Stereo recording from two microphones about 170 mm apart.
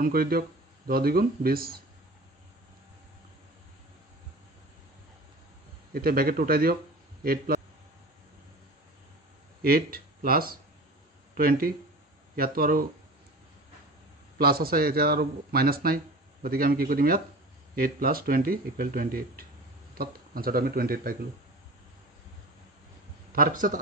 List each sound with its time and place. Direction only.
0.0 s speech: 60° right (ahead or behind)
5.9 s a man's voice: 60° right (ahead or behind)
9.6 s speech: 60° right (ahead or behind)
14.4 s speech: 65° right (ahead or behind)
23.3 s a man's voice: 55° right (ahead or behind)